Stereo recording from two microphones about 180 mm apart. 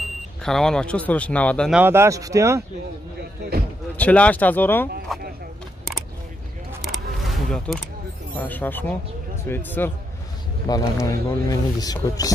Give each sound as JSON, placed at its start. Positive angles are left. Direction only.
{"t": 0.4, "sound": "speech", "side_deg": 0}
{"t": 1.7, "sound": "speech", "side_deg": -10}
{"t": 3.9, "sound": "speech", "side_deg": 10}
{"t": 6.8, "sound": "a sound", "side_deg": 0}
{"t": 8.4, "sound": "speech", "side_deg": 10}